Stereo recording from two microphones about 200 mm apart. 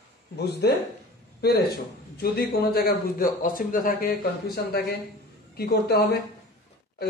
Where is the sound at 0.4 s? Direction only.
55° left (ahead or behind).